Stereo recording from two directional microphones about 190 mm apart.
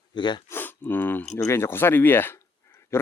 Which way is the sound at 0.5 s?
10° left (ahead or behind).